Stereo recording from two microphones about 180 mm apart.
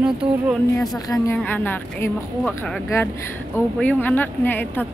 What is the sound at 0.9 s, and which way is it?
A woman's voice, 20° left (ahead or behind).